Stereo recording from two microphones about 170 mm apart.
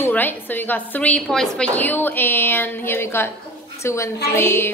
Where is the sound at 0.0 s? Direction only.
10° left (ahead or behind).